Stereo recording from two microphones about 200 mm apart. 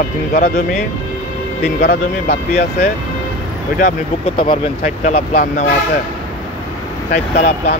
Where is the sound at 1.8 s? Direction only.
55° left (ahead or behind).